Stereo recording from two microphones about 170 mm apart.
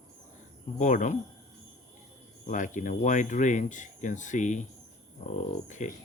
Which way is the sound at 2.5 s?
50° left (ahead or behind).